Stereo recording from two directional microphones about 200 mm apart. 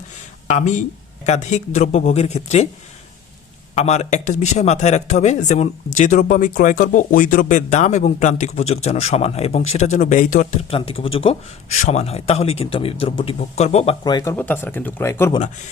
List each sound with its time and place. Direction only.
0.4 s speech: 35° left (ahead or behind)
3.8 s speech: 35° left (ahead or behind)
10.8 s speech: 30° left (ahead or behind)
14.0 s speech: 20° left (ahead or behind)
14.3 s speech: 10° left (ahead or behind)